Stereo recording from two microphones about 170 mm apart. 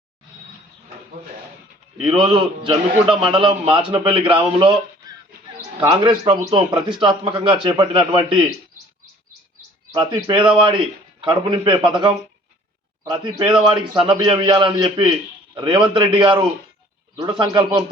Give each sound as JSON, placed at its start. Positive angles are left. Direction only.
{"t": 2.0, "sound": "a man's voice", "side_deg": -30}
{"t": 6.0, "sound": "a man's voice", "side_deg": -30}
{"t": 9.9, "sound": "a man's voice", "side_deg": -25}